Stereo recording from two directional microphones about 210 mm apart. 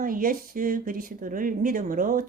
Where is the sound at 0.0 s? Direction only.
40° right (ahead or behind).